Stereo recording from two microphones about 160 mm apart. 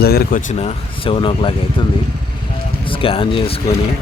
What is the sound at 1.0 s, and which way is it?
Speech, 35° left (ahead or behind).